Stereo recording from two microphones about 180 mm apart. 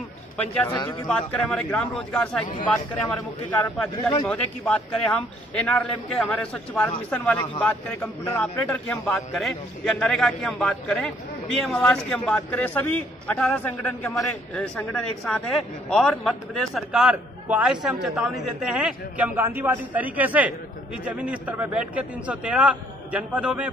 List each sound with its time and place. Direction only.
0.4 s a man's voice: 10° left (ahead or behind)
3.6 s a man's voice: 10° left (ahead or behind); by 23.7 s 10° right (ahead or behind)